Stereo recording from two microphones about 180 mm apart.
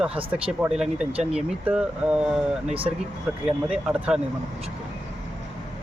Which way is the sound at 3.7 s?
5° right (ahead or behind).